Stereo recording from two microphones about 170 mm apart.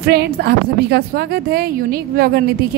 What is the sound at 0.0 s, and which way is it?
A woman's voice, 70° right (ahead or behind).